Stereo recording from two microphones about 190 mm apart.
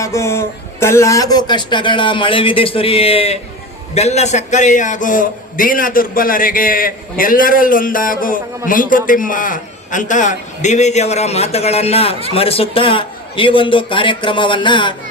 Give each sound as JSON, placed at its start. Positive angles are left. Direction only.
{"t": 0.0, "sound": "a man's voice", "side_deg": 15}